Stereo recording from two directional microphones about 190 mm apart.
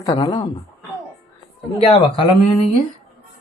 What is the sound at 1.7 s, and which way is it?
Speech, 30° left (ahead or behind).